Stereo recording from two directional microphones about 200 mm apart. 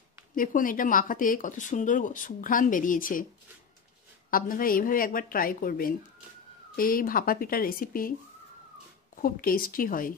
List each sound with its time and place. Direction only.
0.4 s speech: 45° left (ahead or behind)
4.3 s speech: 45° left (ahead or behind)
9.2 s speech: 45° left (ahead or behind)